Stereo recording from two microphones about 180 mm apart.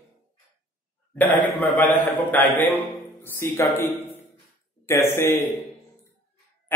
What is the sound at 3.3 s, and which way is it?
A man's voice, 15° left (ahead or behind).